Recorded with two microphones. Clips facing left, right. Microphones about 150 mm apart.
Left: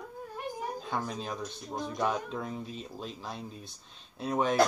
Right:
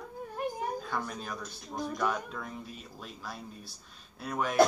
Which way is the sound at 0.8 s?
20° left (ahead or behind).